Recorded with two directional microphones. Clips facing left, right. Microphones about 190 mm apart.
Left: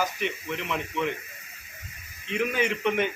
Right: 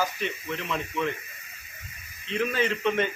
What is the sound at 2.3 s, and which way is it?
Speech, 15° left (ahead or behind).